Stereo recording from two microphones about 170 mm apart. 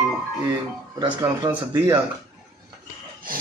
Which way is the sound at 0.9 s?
25° right (ahead or behind).